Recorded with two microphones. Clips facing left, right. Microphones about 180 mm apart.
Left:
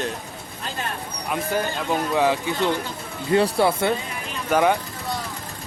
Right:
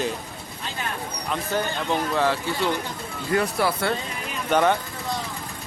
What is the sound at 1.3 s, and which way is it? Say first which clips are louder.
Speech: left 2 dB; 10° left (ahead or behind).